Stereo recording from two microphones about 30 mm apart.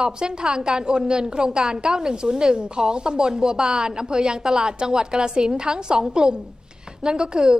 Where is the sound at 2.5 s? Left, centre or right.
Right.